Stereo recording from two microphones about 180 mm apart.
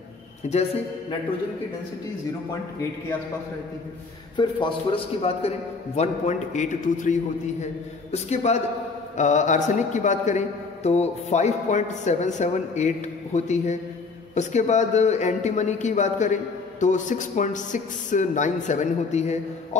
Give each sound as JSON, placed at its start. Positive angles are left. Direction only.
{"t": 0.4, "sound": "a man's voice", "side_deg": 40}
{"t": 4.4, "sound": "a man's voice", "side_deg": 25}